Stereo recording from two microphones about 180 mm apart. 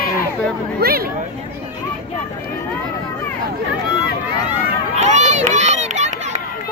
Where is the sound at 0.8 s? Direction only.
55° right (ahead or behind).